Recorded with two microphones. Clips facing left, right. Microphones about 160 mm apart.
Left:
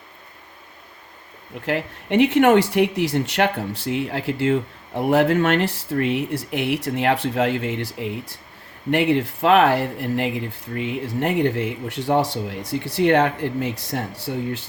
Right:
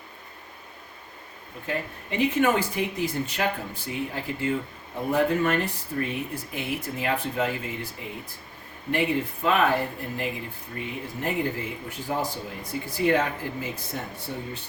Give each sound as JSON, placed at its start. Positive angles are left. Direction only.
{"t": 1.6, "sound": "speech", "side_deg": 80}